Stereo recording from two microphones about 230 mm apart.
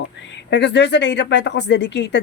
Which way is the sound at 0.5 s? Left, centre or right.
Left.